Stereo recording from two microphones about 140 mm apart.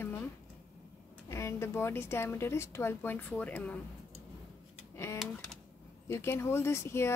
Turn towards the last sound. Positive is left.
turn(degrees=20)  # may be behind; listen again after turning